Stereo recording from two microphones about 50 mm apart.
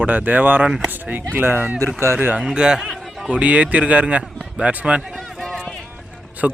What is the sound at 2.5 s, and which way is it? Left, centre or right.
Speech, centre.